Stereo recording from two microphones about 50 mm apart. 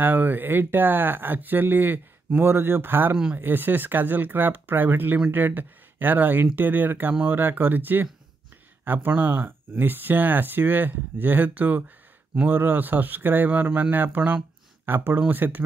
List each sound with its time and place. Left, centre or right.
0.0 s speech: right